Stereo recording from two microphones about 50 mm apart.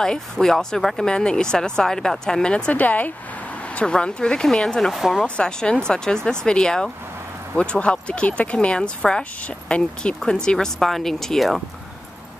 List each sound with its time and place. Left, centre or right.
0.0 s speech: centre
2.7 s speech: left
3.7 s speech: left
4.9 s speech: centre
5.2 s speech: centre